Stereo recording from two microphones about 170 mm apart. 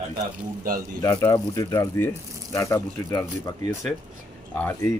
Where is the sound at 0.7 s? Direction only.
55° right (ahead or behind).